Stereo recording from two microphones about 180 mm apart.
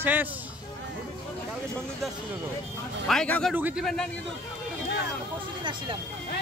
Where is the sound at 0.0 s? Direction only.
10° right (ahead or behind).